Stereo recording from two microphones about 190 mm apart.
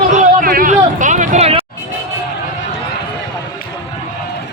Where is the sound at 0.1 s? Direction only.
40° right (ahead or behind).